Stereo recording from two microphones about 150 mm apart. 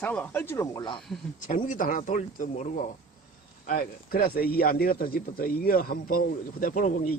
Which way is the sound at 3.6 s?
80° left.